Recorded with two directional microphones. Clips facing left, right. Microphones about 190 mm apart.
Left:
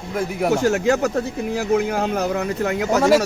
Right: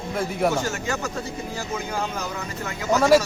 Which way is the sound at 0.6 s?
65° left (ahead or behind).